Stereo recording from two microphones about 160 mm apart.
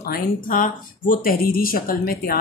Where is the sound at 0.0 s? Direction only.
65° left (ahead or behind).